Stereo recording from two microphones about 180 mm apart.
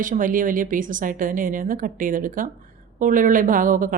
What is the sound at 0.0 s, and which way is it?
Speech, 50° right (ahead or behind).